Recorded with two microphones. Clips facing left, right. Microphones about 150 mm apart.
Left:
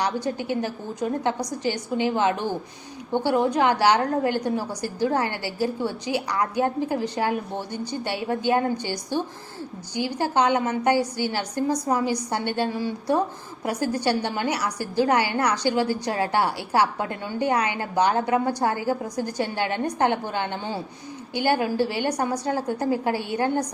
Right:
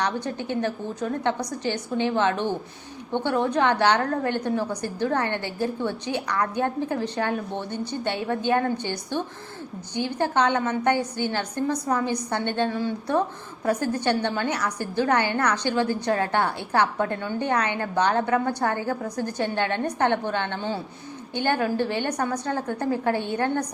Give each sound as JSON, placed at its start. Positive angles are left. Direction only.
{"t": 0.0, "sound": "a woman's voice", "side_deg": 10}